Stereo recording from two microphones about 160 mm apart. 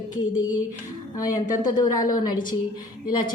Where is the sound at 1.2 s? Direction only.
25° left (ahead or behind).